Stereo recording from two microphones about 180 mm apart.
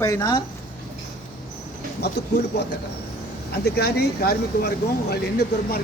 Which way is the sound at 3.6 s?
65° left (ahead or behind).